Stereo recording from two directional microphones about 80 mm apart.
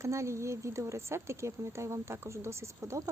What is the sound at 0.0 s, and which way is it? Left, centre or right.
Speech, right.